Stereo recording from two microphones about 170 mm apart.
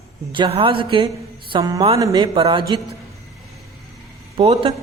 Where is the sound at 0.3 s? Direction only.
35° right (ahead or behind).